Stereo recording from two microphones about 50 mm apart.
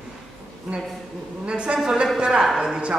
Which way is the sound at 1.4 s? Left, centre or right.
Centre.